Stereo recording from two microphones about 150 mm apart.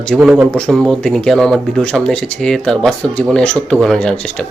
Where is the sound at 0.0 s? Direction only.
Centre (ahead or behind).